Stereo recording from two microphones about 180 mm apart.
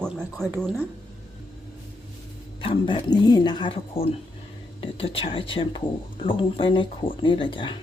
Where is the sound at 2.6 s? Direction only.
25° left (ahead or behind).